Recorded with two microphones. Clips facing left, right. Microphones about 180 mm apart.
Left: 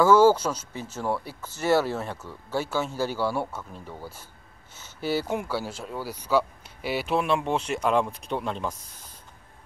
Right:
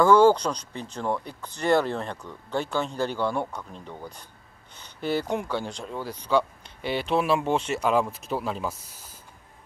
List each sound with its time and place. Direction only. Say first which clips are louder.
0.0 s speech: even; 5° left (ahead or behind)